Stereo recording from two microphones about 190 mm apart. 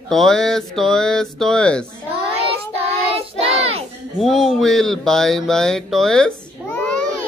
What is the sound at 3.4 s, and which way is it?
Child singing, 30° right (ahead or behind).